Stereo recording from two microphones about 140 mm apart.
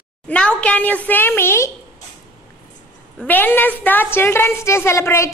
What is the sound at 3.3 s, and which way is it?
A woman's voice, 15° left (ahead or behind).